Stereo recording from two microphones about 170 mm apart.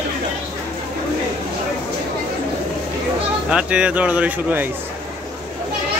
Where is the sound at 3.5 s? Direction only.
5° right (ahead or behind).